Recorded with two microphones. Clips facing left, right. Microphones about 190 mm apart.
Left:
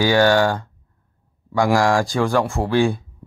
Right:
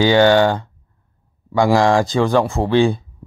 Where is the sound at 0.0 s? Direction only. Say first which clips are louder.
Right 3 dB; 20° right (ahead or behind).